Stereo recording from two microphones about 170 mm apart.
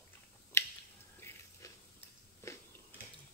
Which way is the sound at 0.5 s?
15° left (ahead or behind).